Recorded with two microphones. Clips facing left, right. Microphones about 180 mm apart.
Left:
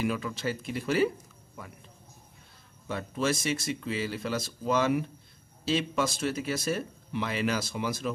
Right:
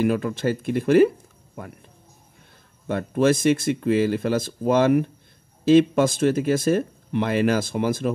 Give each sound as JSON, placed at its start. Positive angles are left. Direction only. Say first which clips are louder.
{"t": 0.0, "sound": "speech", "louder": "right 9 dB", "side_deg": -50}
{"t": 2.9, "sound": "speech", "louder": "right 10 dB", "side_deg": -55}